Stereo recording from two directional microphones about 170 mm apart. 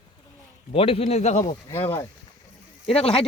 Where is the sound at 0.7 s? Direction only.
35° left (ahead or behind).